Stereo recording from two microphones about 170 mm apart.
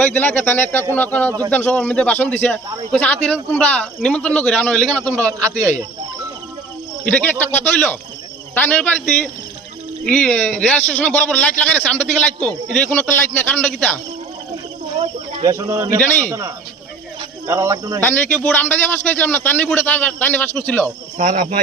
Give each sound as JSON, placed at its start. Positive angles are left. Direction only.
{"t": 0.0, "sound": "a man's voice", "side_deg": 10}
{"t": 5.1, "sound": "a man's voice", "side_deg": -20}
{"t": 7.0, "sound": "a man's voice", "side_deg": 10}
{"t": 15.0, "sound": "snake", "side_deg": -40}
{"t": 15.4, "sound": "a man's voice", "side_deg": -20}
{"t": 17.4, "sound": "speech", "side_deg": -15}
{"t": 18.1, "sound": "a man's voice", "side_deg": 10}
{"t": 21.2, "sound": "speech", "side_deg": -50}